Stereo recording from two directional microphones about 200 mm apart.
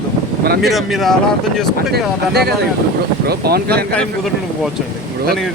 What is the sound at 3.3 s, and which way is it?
Speech, 50° right (ahead or behind).